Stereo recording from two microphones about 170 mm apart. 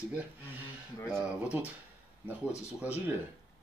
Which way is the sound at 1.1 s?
10° right (ahead or behind).